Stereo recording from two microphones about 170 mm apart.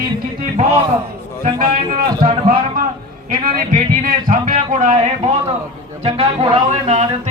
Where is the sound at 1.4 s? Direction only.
55° right (ahead or behind).